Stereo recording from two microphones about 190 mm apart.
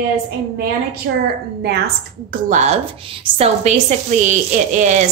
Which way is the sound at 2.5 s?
40° right (ahead or behind).